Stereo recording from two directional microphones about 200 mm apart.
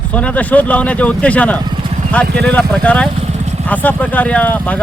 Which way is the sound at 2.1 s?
5° left (ahead or behind).